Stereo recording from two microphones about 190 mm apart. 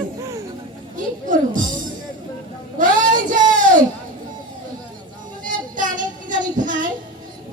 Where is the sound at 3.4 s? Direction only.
45° right (ahead or behind).